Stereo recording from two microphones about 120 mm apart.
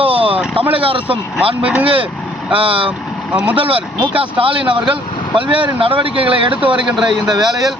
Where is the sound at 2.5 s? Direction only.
45° right (ahead or behind).